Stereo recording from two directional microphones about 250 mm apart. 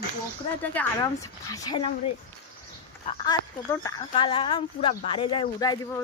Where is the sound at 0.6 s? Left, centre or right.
Centre.